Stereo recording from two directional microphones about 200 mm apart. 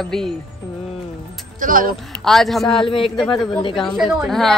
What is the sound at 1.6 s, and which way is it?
Speech, 45° right (ahead or behind).